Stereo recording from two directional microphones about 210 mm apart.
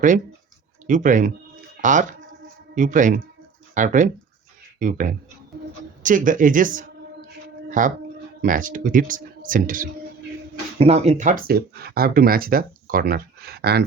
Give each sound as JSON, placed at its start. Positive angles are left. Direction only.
{"t": 0.9, "sound": "speech", "side_deg": -35}
{"t": 10.8, "sound": "speech", "side_deg": -30}